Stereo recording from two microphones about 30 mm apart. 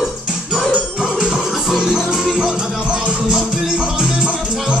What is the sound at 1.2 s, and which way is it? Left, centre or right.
Music, right.